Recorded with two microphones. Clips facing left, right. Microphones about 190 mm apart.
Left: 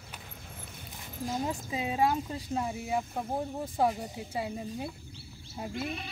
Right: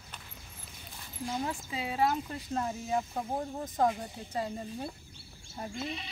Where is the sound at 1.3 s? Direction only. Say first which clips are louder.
Left 2 dB; 15° left (ahead or behind).